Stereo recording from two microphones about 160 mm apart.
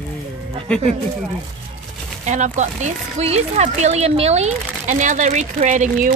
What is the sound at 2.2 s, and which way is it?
Speech, 50° right (ahead or behind).